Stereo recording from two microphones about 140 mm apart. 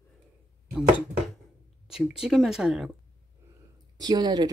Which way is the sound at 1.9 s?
5° right (ahead or behind).